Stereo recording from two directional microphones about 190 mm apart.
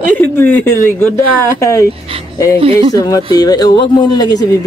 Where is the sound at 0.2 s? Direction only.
10° left (ahead or behind).